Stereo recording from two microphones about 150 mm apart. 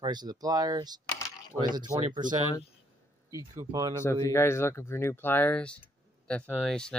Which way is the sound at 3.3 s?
25° right (ahead or behind).